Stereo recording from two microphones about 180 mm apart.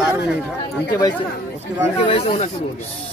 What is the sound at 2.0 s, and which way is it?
Speech, 30° left (ahead or behind).